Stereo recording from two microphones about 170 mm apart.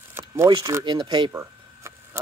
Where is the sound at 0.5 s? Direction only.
20° right (ahead or behind).